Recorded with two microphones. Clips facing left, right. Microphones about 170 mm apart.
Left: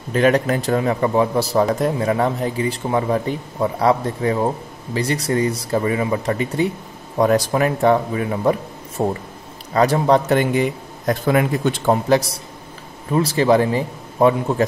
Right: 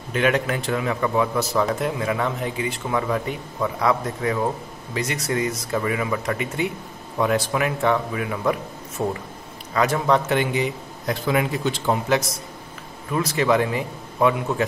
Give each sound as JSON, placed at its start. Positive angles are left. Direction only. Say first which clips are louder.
{"t": 0.1, "sound": "a man's voice", "louder": "left 5 dB", "side_deg": 35}
{"t": 12.1, "sound": "a man's voice", "louder": "left 5 dB", "side_deg": 35}